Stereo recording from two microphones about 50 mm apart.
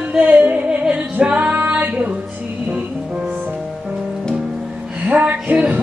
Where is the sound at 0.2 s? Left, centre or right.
Right.